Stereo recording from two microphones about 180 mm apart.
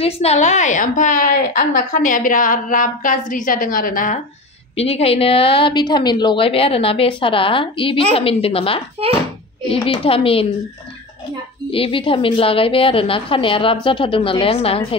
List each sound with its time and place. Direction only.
0.0 s a woman's voice: 35° left (ahead or behind)
4.7 s a woman's voice: 35° left (ahead or behind)
11.7 s a woman's voice: 30° left (ahead or behind)